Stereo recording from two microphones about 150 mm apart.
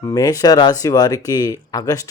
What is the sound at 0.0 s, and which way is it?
Speech, 25° left (ahead or behind).